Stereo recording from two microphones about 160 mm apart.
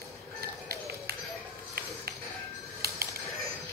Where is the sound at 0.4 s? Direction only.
75° right (ahead or behind).